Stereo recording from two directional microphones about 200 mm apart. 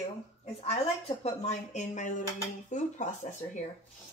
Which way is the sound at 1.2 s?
35° left (ahead or behind).